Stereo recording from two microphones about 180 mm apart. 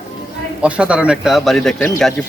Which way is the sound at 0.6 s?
5° right (ahead or behind).